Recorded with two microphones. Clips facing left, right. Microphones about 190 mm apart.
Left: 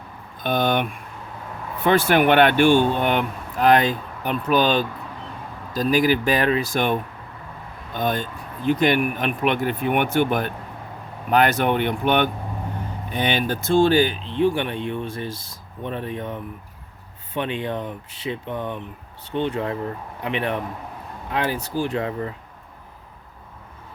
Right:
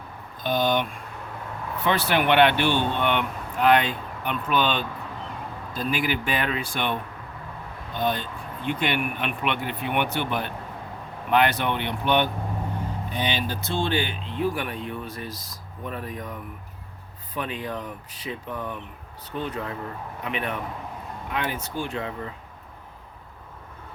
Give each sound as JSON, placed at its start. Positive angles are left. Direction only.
{"t": 0.4, "sound": "speech", "side_deg": 55}